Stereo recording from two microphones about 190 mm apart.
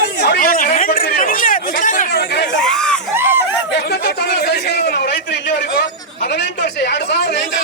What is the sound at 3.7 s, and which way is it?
A man's voice, 60° left (ahead or behind).